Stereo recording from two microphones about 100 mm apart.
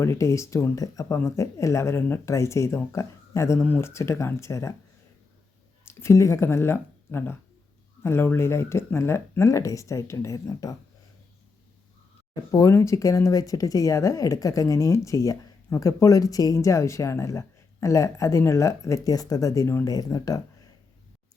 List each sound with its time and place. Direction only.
0.0 s speech: 30° left (ahead or behind)
5.8 s speech: 25° left (ahead or behind)
12.3 s speech: 35° left (ahead or behind)